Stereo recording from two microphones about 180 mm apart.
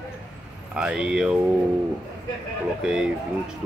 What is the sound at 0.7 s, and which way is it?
Speech, 5° right (ahead or behind).